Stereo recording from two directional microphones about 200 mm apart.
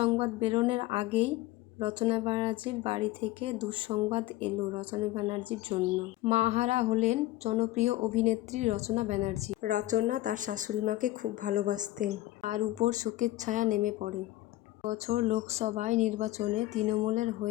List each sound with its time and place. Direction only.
0.0 s speech: 25° right (ahead or behind)